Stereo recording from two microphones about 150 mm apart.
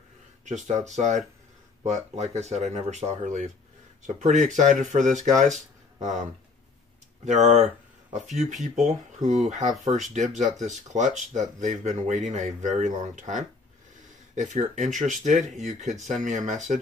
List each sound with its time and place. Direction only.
0.8 s speech: 50° right (ahead or behind)
7.2 s speech: 50° right (ahead or behind)
8.8 s speech: 50° right (ahead or behind)